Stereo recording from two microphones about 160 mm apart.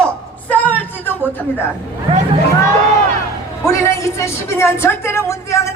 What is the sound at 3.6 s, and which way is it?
A woman's voice, 20° left (ahead or behind).